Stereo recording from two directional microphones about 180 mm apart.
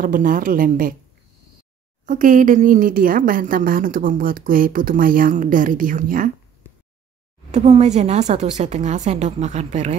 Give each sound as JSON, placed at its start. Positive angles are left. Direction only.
{"t": 0.0, "sound": "a woman's voice", "side_deg": -50}
{"t": 2.0, "sound": "a woman's voice", "side_deg": -45}
{"t": 7.5, "sound": "a woman's voice", "side_deg": -40}